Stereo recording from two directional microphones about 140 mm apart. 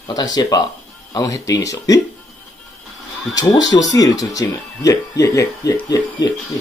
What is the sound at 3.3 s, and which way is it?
Speech, 25° left (ahead or behind).